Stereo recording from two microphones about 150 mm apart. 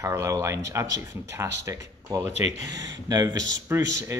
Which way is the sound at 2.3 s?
50° left (ahead or behind).